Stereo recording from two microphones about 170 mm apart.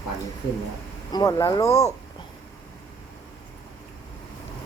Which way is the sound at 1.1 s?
20° left (ahead or behind).